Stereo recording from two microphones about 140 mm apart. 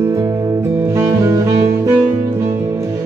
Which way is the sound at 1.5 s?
45° right (ahead or behind).